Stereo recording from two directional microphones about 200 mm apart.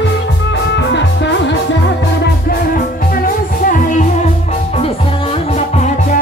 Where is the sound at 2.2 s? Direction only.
45° left (ahead or behind); by 5.8 s 30° left (ahead or behind).